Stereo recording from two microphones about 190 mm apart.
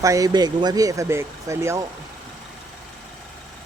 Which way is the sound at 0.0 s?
15° right (ahead or behind).